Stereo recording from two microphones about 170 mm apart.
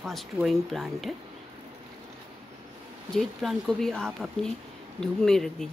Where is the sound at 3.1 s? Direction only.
Centre (ahead or behind).